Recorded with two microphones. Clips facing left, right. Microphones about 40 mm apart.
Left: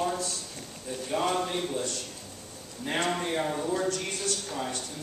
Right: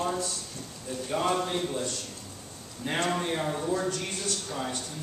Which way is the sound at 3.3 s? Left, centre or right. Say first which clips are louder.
Left 1 dB; centre.